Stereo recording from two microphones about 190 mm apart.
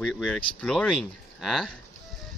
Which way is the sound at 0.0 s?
5° left (ahead or behind).